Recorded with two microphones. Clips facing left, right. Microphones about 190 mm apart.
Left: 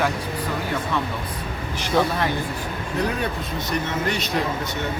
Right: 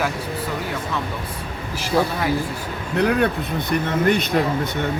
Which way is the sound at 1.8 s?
5° right (ahead or behind).